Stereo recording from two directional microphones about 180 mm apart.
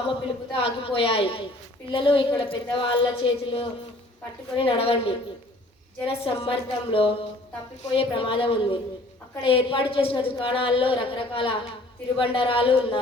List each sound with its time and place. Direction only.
0.0 s a woman's voice: 30° left (ahead or behind)